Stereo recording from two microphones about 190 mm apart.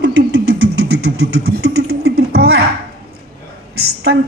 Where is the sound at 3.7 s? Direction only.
60° right (ahead or behind).